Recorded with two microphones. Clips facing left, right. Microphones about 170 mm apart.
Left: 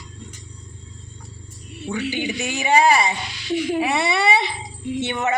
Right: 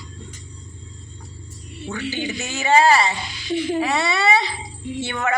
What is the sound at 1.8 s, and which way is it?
A woman's voice, 15° left (ahead or behind).